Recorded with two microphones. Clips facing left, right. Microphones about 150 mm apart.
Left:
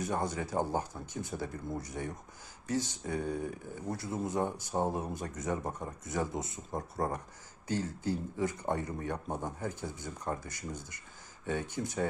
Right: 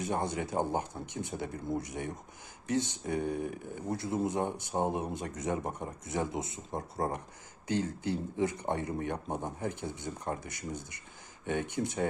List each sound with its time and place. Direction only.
0.0 s speech: 25° right (ahead or behind)